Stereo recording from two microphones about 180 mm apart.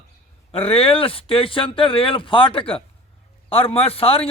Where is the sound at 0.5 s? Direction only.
30° left (ahead or behind).